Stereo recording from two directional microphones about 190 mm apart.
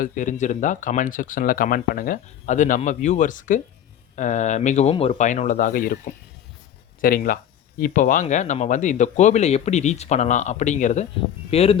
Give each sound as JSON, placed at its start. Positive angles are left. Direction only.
{"t": 0.0, "sound": "speech", "side_deg": 45}